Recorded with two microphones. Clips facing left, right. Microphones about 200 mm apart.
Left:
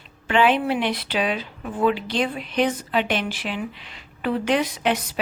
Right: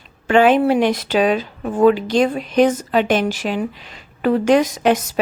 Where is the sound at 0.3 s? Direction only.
45° right (ahead or behind).